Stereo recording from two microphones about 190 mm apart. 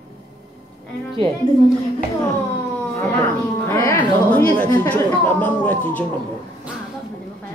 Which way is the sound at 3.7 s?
15° left (ahead or behind).